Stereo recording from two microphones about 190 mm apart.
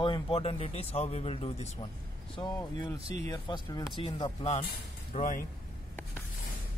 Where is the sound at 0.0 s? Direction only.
25° left (ahead or behind).